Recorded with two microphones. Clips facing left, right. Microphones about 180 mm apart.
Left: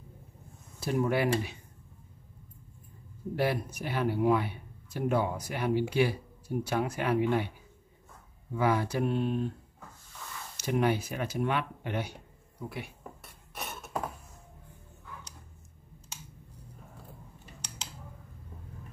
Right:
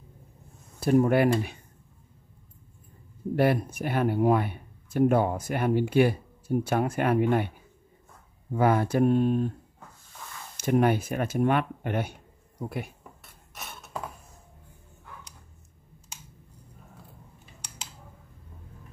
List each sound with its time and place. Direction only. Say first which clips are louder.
0.7 s speech: right 7 dB; 50° right (ahead or behind)
3.3 s speech: right 6 dB; 55° right (ahead or behind)
8.5 s speech: right 5 dB; 50° right (ahead or behind)
10.6 s speech: right 5 dB; 50° right (ahead or behind)